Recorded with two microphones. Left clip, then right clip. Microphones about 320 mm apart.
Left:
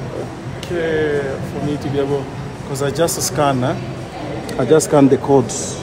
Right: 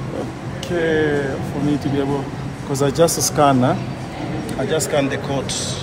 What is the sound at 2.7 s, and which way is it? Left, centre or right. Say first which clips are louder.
Speech: right 2 dB; centre.